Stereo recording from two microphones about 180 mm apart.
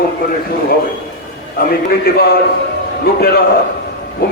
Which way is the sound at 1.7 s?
55° left (ahead or behind).